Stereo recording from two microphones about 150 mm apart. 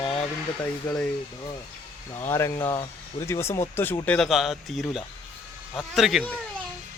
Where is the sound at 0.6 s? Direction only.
15° left (ahead or behind).